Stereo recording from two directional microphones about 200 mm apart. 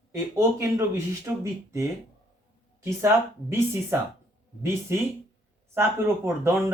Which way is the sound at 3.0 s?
15° right (ahead or behind).